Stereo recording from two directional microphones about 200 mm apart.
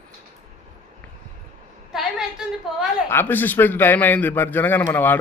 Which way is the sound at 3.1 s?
10° left (ahead or behind).